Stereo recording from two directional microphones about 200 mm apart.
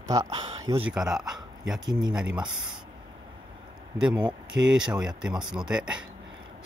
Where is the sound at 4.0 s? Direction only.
5° right (ahead or behind).